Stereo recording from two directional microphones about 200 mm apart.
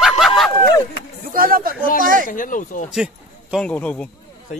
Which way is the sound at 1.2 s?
45° right (ahead or behind).